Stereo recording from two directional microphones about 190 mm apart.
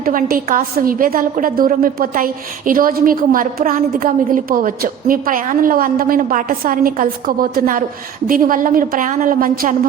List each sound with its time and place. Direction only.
0.0 s a woman's voice: 50° right (ahead or behind)